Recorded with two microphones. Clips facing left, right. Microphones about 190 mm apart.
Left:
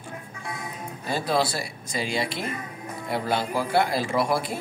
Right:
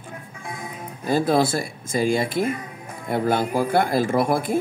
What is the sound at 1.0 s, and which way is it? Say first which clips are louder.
Speech: right 6 dB; 50° right (ahead or behind).